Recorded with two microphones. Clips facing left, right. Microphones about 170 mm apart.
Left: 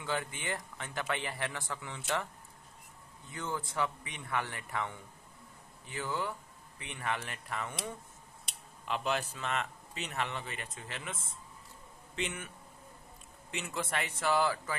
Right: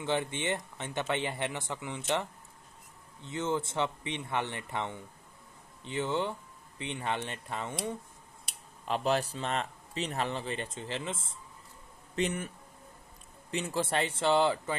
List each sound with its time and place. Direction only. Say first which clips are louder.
0.0 s a man's voice: right 5 dB; 25° right (ahead or behind)
8.8 s a man's voice: right 5 dB; 35° right (ahead or behind)
12.2 s a man's voice: right 7 dB; 40° right (ahead or behind)
13.5 s a man's voice: right 6 dB; 30° right (ahead or behind)